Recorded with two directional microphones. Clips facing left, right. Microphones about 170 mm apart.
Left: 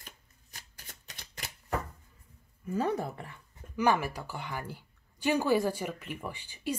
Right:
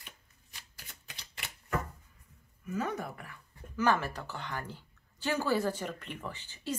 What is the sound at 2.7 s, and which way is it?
Speech, 30° left (ahead or behind).